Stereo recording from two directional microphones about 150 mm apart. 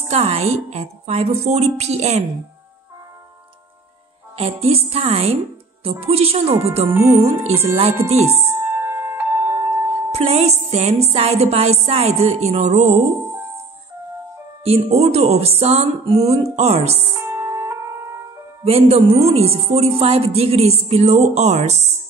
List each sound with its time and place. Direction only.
0.1 s speech: 45° right (ahead or behind)
4.4 s a woman's voice: 40° right (ahead or behind)
6.9 s speech: 20° right (ahead or behind)
7.2 s speech: 45° right (ahead or behind)
8.5 s music: 15° right (ahead or behind)
10.1 s speech: 45° right (ahead or behind)
14.6 s speech: 45° right (ahead or behind)
17.1 s music: 15° right (ahead or behind)
18.6 s speech: 40° right (ahead or behind)